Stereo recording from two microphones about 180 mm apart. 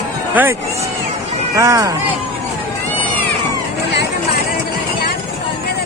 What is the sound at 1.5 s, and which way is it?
Speech, 20° right (ahead or behind).